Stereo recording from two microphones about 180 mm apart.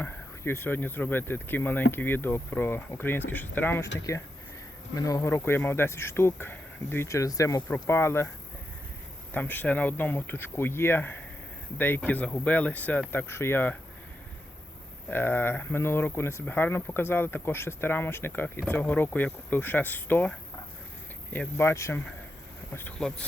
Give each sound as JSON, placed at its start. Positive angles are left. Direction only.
{"t": 0.0, "sound": "speech", "side_deg": 15}
{"t": 9.3, "sound": "speech", "side_deg": 10}
{"t": 15.1, "sound": "speech", "side_deg": 10}
{"t": 21.6, "sound": "speech", "side_deg": 15}